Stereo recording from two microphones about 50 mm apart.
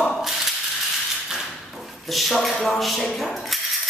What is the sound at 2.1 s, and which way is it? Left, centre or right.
Speech, centre.